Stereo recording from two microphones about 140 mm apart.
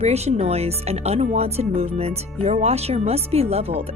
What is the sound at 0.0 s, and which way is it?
Speech, 50° right (ahead or behind).